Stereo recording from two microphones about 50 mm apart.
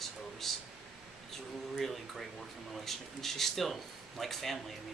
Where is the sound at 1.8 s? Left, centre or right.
Centre.